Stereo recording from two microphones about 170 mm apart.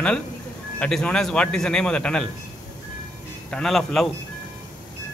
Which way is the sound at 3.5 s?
5° left (ahead or behind).